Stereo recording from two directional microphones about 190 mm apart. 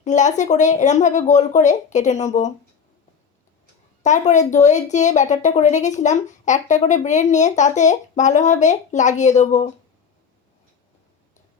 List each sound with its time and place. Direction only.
0.0 s speech: 40° left (ahead or behind)
4.0 s speech: 40° left (ahead or behind)